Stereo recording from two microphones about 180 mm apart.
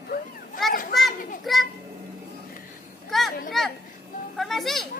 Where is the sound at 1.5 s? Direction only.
Centre (ahead or behind).